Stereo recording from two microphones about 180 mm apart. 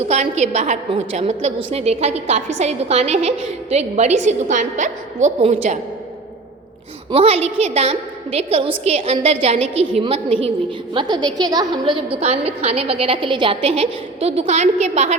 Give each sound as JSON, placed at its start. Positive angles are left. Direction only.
{"t": 0.0, "sound": "a woman's voice", "side_deg": -40}
{"t": 7.1, "sound": "a woman's voice", "side_deg": -35}
{"t": 12.1, "sound": "a woman's voice", "side_deg": -35}